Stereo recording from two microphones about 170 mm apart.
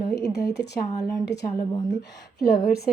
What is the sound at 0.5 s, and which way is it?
Speech, 80° left.